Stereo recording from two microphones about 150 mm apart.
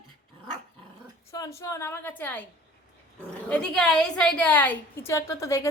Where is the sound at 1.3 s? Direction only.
20° left (ahead or behind).